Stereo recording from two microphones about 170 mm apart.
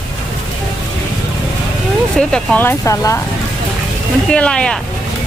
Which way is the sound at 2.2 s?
5° left (ahead or behind).